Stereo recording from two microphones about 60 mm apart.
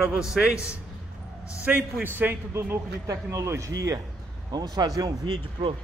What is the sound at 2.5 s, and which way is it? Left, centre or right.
Speech, right.